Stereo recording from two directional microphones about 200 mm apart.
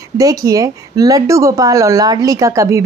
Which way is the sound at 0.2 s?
15° right (ahead or behind).